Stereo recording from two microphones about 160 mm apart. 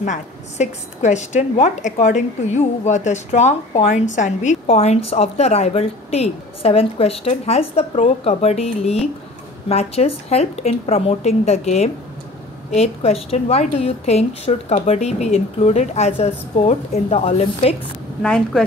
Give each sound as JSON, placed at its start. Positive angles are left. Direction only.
{"t": 0.0, "sound": "a woman's voice", "side_deg": 50}
{"t": 18.2, "sound": "speech", "side_deg": 5}